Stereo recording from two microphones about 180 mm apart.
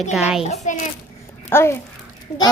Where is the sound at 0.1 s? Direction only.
5° right (ahead or behind).